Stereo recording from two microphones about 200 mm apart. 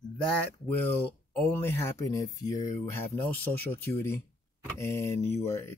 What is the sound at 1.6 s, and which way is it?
Speech, 15° left (ahead or behind).